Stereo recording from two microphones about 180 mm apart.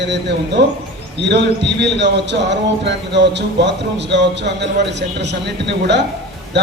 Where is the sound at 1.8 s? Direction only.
75° right (ahead or behind).